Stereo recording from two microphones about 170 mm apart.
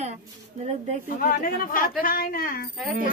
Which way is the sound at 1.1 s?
55° left (ahead or behind).